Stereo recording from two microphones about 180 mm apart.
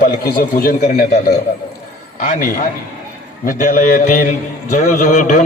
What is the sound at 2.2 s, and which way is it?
A man's voice, 50° left (ahead or behind).